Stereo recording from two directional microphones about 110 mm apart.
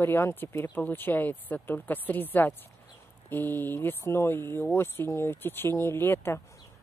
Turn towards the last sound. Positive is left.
turn(degrees=20)  # may be behind; listen again after turning